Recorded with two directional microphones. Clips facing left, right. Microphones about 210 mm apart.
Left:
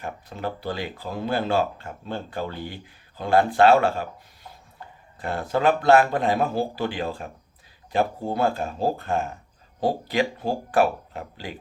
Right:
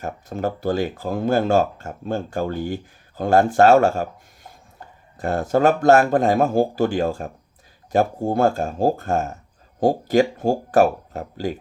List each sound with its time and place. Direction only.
0.0 s speech: 45° right (ahead or behind)